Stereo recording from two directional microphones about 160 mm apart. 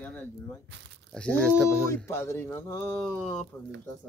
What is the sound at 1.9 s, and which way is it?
Speech, 15° left (ahead or behind).